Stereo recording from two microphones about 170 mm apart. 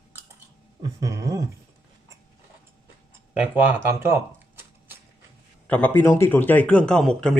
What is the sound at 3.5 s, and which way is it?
Speech, 15° right (ahead or behind).